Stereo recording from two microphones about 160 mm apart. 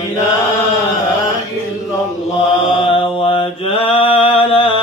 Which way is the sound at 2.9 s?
35° left (ahead or behind).